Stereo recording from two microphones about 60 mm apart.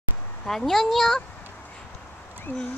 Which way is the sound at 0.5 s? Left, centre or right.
Centre.